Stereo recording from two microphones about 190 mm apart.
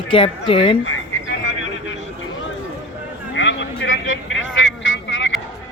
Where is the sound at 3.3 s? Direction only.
75° left (ahead or behind).